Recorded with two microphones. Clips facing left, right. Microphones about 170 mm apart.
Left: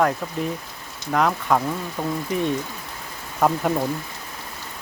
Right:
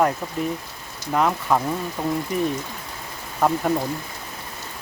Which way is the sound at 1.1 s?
5° right (ahead or behind).